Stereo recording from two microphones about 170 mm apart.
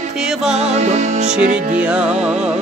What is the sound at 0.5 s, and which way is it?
Music, 40° right (ahead or behind).